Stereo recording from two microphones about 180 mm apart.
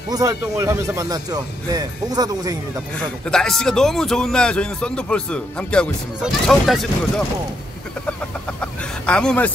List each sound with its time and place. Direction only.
0.1 s speech: 15° right (ahead or behind)
3.3 s speech: 5° left (ahead or behind)
8.5 s a sound: 5° left (ahead or behind)